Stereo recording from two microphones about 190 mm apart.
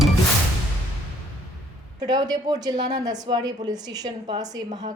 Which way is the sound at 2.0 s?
20° right (ahead or behind).